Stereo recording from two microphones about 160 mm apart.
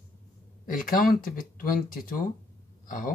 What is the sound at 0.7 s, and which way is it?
Speech, 60° left (ahead or behind).